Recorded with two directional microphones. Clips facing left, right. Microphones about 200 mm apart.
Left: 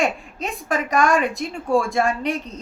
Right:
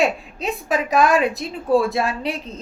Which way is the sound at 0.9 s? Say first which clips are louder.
Right 2 dB; 5° right (ahead or behind).